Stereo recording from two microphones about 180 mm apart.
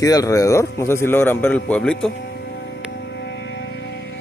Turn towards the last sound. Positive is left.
turn(degrees=70)  # may be behind; listen again after turning